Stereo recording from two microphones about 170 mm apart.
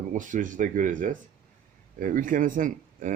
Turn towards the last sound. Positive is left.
turn(degrees=-50)  # may be behind; listen again after turning